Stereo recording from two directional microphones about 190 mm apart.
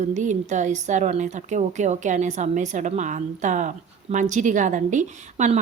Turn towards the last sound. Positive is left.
turn(degrees=-40)  # may be behind; listen again after turning